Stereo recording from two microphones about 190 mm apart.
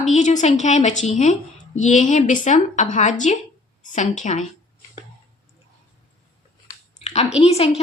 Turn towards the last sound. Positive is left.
turn(degrees=35)  # may be behind; listen again after turning